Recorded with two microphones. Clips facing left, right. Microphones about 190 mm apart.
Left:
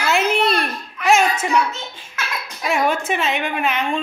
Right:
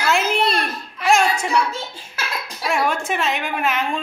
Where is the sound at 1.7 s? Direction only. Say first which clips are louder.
Right 2 dB; 30° right (ahead or behind).